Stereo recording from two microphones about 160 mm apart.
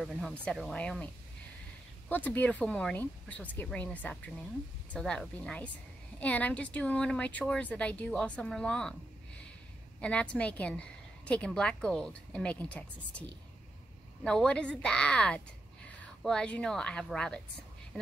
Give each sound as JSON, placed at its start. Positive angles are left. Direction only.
{"t": 0.0, "sound": "a woman's voice", "side_deg": 0}
{"t": 2.0, "sound": "a woman's voice", "side_deg": 10}
{"t": 9.9, "sound": "a woman's voice", "side_deg": 5}
{"t": 14.2, "sound": "a woman's voice", "side_deg": 5}